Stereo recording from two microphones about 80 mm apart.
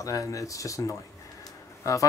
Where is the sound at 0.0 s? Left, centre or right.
Left.